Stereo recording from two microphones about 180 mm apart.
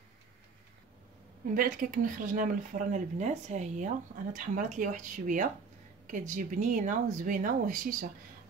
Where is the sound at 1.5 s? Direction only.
50° right (ahead or behind).